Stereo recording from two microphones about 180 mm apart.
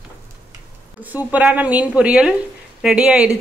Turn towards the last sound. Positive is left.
turn(degrees=-5)  # may be behind; listen again after turning